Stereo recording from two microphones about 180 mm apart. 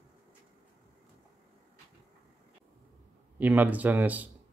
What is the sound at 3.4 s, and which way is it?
Speech, 10° right (ahead or behind).